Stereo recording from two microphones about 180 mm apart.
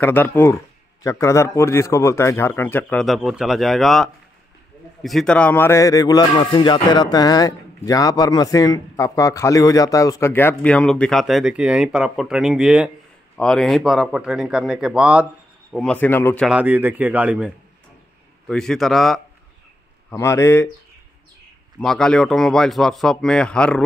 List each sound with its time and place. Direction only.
0.0 s speech: 10° left (ahead or behind)
16.4 s speech: 10° right (ahead or behind)
18.5 s speech: 5° left (ahead or behind)
20.1 s speech: 15° left (ahead or behind)
21.7 s speech: 5° left (ahead or behind)